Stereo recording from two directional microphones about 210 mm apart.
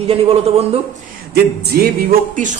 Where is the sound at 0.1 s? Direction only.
30° right (ahead or behind).